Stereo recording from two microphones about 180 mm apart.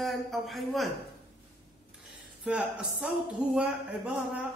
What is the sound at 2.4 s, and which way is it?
Speech, 5° right (ahead or behind).